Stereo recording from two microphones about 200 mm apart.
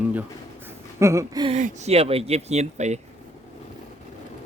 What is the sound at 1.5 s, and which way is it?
Speech, 35° right (ahead or behind).